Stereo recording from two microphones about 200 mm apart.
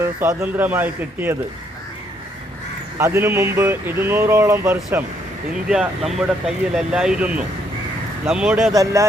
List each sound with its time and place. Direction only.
0.0 s speech: 15° right (ahead or behind)
3.0 s speech: 10° right (ahead or behind)
8.7 s speech: 15° right (ahead or behind)